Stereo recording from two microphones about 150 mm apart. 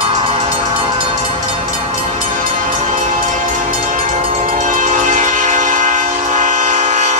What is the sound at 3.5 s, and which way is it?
Train, 60° right (ahead or behind).